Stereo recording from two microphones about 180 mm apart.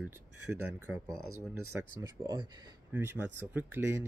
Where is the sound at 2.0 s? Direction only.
20° right (ahead or behind).